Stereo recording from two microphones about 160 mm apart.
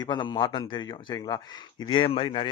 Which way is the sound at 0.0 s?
30° left (ahead or behind).